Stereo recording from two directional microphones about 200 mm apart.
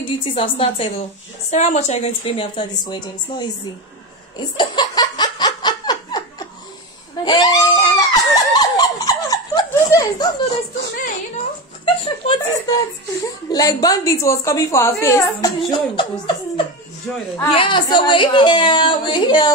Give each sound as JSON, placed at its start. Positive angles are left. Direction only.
{"t": 0.0, "sound": "speech", "side_deg": 30}
{"t": 4.6, "sound": "laughter", "side_deg": 20}
{"t": 7.2, "sound": "screaming", "side_deg": 20}
{"t": 11.8, "sound": "a woman's voice", "side_deg": 25}